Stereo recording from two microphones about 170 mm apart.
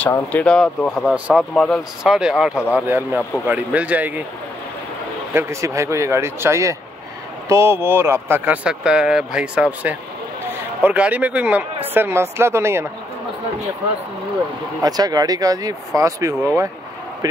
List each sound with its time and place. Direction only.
0.0 s speech: 10° left (ahead or behind)
1.0 s speech: 5° right (ahead or behind)
1.5 s speech: 5° left (ahead or behind)
5.3 s speech: 15° right (ahead or behind)
14.8 s speech: 25° right (ahead or behind)